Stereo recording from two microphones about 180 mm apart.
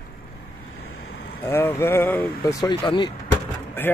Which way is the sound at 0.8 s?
60° left (ahead or behind).